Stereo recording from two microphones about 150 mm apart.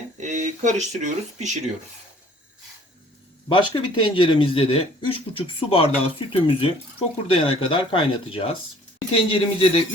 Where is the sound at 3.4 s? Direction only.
30° left (ahead or behind).